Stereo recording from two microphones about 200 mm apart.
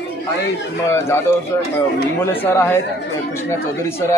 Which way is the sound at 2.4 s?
10° left (ahead or behind).